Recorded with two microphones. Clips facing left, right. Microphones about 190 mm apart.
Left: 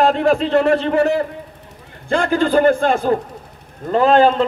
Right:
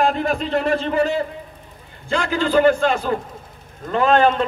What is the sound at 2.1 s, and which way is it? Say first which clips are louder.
A man's voice: left 4 dB; 50° left (ahead or behind).